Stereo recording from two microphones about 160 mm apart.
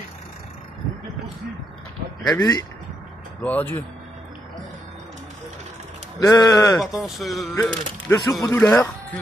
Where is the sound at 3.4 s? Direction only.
10° left (ahead or behind).